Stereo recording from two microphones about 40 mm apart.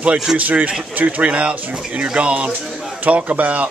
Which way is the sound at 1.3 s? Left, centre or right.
Right.